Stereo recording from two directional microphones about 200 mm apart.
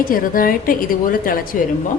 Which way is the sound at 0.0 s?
45° left (ahead or behind).